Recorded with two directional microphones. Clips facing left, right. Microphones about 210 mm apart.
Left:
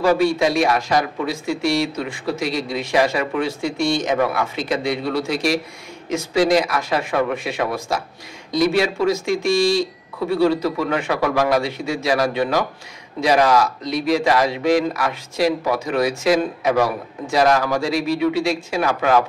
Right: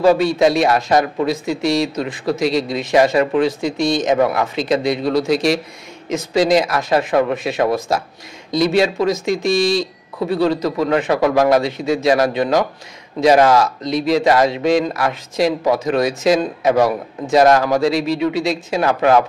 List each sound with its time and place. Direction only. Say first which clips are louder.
0.0 s speech: right 4 dB; 25° right (ahead or behind)